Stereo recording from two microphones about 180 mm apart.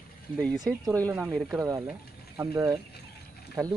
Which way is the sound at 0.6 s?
20° right (ahead or behind).